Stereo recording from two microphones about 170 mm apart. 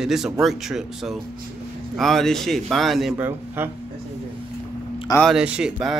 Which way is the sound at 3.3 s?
15° right (ahead or behind).